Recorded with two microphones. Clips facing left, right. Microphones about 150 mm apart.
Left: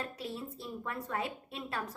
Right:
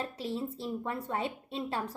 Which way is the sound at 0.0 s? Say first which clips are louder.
Right 5 dB; 25° right (ahead or behind).